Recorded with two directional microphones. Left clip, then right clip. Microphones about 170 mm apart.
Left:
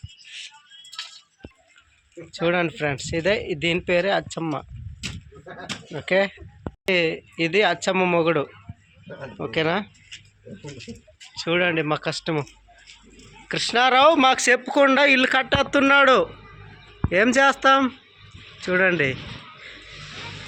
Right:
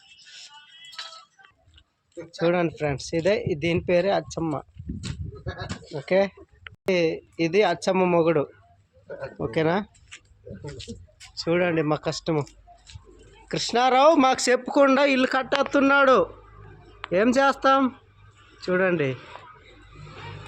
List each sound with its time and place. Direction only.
2.4 s speech: 5° right (ahead or behind)
5.9 s speech: 5° right (ahead or behind)
9.0 s speech: 20° right (ahead or behind)
11.3 s speech: 15° right (ahead or behind)
13.5 s speech: 15° right (ahead or behind)